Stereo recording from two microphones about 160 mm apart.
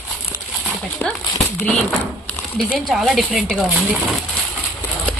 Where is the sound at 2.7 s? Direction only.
Centre (ahead or behind).